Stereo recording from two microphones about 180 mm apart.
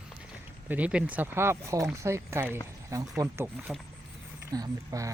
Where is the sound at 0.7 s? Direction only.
5° right (ahead or behind).